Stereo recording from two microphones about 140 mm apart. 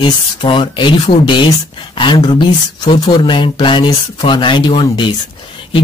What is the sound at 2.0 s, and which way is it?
Speech, 35° left (ahead or behind).